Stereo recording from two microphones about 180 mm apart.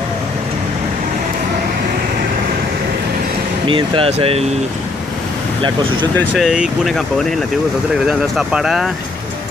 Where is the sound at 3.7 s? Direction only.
30° right (ahead or behind).